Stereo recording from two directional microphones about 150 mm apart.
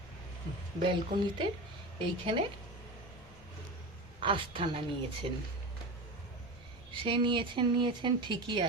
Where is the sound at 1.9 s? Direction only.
35° right (ahead or behind).